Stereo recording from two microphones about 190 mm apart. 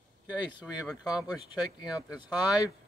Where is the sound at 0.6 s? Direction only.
Centre (ahead or behind).